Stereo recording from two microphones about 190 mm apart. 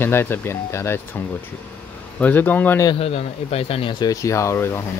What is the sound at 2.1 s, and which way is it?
Speech, 10° left (ahead or behind).